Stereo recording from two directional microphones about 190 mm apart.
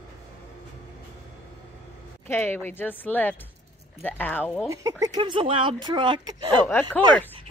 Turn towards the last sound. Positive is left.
turn(degrees=10)  # may be behind; listen again after turning